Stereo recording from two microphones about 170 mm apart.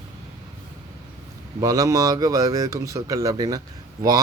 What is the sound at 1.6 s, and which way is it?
Speech, 20° right (ahead or behind).